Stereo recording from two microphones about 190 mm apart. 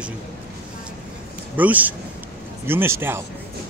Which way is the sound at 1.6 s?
10° right (ahead or behind).